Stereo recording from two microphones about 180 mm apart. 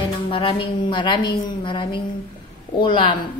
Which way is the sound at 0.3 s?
30° left (ahead or behind).